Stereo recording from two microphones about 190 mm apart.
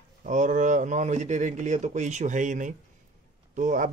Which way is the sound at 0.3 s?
40° right (ahead or behind).